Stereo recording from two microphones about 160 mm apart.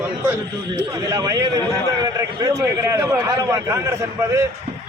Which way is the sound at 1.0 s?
20° right (ahead or behind).